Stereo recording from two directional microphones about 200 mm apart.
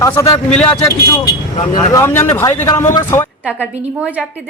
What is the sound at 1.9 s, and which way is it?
A man's voice, 15° left (ahead or behind).